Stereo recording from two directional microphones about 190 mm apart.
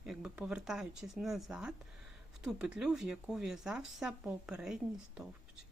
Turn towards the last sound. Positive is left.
turn(degrees=-5)  # may be behind; listen again after turning